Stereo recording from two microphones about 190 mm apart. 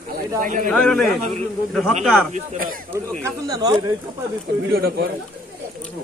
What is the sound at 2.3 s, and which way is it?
Speech, 45° right (ahead or behind).